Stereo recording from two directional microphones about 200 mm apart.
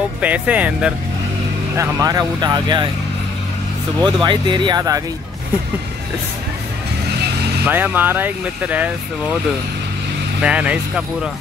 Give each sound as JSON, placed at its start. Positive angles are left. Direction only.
{"t": 0.2, "sound": "speech", "side_deg": -5}
{"t": 1.8, "sound": "speech", "side_deg": -15}
{"t": 4.0, "sound": "speech", "side_deg": -20}
{"t": 7.6, "sound": "speech", "side_deg": -10}
{"t": 10.4, "sound": "speech", "side_deg": -5}